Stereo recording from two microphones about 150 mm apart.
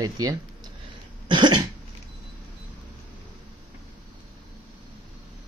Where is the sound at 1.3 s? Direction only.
30° right (ahead or behind).